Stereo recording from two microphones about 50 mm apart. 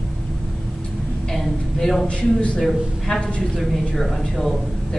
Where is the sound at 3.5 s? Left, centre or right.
Centre.